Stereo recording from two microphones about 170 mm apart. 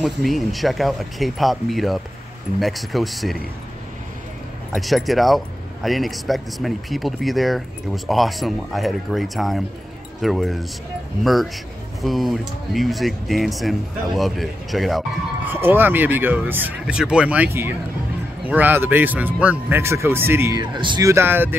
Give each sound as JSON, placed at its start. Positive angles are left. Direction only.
{"t": 0.0, "sound": "speech", "side_deg": 0}
{"t": 4.7, "sound": "speech", "side_deg": 0}
{"t": 15.4, "sound": "speech", "side_deg": -10}